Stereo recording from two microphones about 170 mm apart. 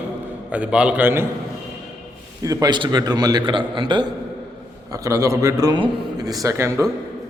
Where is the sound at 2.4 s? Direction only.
20° right (ahead or behind).